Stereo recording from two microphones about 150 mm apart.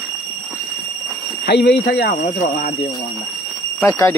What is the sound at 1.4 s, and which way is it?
Speech, 90° left.